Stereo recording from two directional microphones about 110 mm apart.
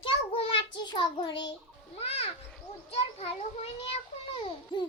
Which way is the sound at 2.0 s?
70° left (ahead or behind).